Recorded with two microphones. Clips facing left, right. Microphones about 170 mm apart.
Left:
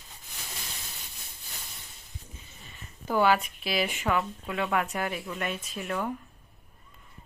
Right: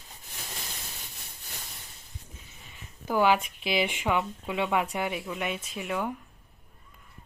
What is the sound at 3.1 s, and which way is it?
Speech, 10° right (ahead or behind).